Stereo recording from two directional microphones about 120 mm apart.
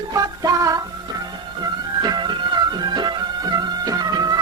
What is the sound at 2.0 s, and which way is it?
Music, 35° right (ahead or behind).